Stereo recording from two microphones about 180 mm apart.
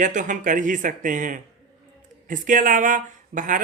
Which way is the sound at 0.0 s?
45° right (ahead or behind).